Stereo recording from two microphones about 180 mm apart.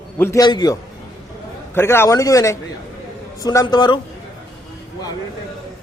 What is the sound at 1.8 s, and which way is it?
A man's voice, 15° left (ahead or behind).